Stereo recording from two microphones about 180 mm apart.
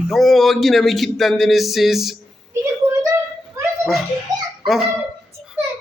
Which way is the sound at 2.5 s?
15° right (ahead or behind).